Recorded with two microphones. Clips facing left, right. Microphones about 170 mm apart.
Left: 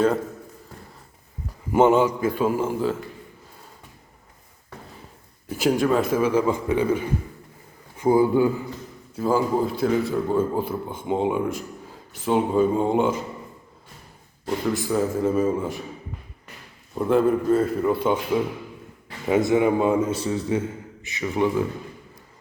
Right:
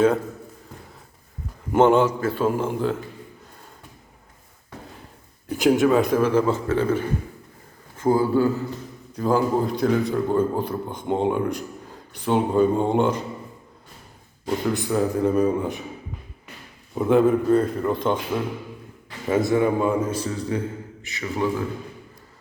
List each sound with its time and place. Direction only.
1.7 s a man's voice: 10° left (ahead or behind)
5.5 s a man's voice: centre (ahead or behind); by 8.6 s 15° left (ahead or behind)
9.1 s a man's voice: 5° left (ahead or behind)
14.4 s a man's voice: centre (ahead or behind)
16.9 s a man's voice: centre (ahead or behind)
19.5 s a man's voice: 20° left (ahead or behind)